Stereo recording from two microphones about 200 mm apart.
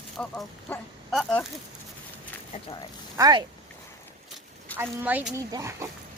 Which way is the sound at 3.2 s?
20° right (ahead or behind).